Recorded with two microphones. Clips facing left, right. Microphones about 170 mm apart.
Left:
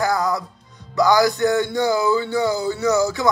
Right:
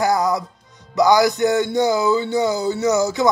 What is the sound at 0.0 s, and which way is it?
Music, 20° right (ahead or behind).